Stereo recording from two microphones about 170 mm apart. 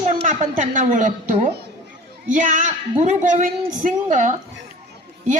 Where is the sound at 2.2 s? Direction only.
50° right (ahead or behind).